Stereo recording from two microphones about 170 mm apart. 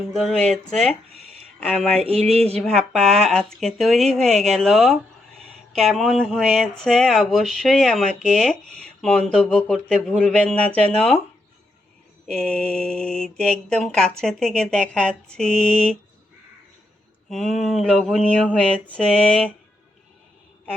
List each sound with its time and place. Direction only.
0.1 s speech: 5° left (ahead or behind)
2.0 s a sound: 35° right (ahead or behind)
2.6 s speech: 5° left (ahead or behind)
12.3 s speech: 5° left (ahead or behind)
17.2 s speech: centre (ahead or behind)